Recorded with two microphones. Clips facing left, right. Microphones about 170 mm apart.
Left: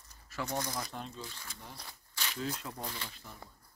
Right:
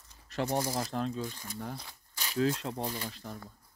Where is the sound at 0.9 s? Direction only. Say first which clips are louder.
Right 10 dB; 90° right.